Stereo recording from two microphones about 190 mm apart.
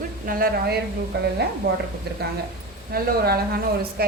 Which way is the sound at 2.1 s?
55° right (ahead or behind).